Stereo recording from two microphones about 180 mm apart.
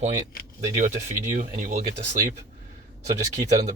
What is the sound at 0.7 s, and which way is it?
Speech, 40° right (ahead or behind).